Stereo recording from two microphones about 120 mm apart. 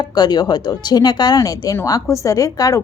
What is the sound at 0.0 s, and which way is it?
A woman's voice, 35° left (ahead or behind).